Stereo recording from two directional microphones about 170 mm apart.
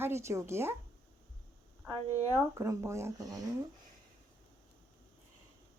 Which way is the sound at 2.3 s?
15° right (ahead or behind).